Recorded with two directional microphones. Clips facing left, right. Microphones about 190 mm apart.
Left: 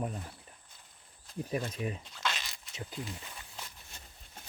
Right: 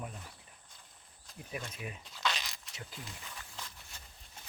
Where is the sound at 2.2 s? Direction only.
Centre (ahead or behind).